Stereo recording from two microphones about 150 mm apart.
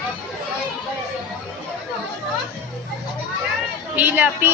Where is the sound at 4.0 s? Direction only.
10° right (ahead or behind).